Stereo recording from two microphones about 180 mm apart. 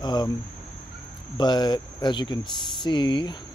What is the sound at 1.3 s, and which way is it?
Speech, 25° left (ahead or behind).